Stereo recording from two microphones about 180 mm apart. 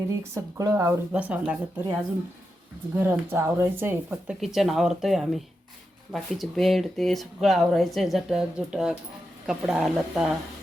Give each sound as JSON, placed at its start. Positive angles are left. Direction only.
{"t": 0.2, "sound": "speech", "side_deg": -15}
{"t": 3.0, "sound": "speech", "side_deg": -15}
{"t": 4.1, "sound": "speech", "side_deg": 0}